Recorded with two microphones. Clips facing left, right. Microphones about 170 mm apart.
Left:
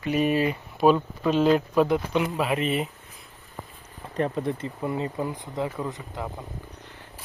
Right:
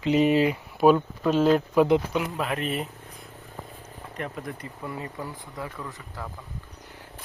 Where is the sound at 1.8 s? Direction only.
20° right (ahead or behind).